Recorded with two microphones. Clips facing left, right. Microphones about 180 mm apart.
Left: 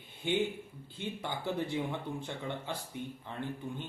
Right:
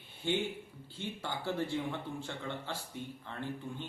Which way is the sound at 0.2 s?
15° left (ahead or behind).